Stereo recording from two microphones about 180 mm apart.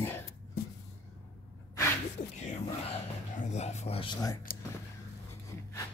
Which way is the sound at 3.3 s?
40° left (ahead or behind).